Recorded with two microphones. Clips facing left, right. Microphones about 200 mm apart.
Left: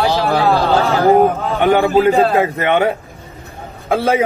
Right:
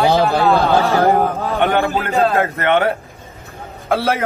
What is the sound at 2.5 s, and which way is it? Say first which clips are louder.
Speech: left 1 dB; 15° left (ahead or behind).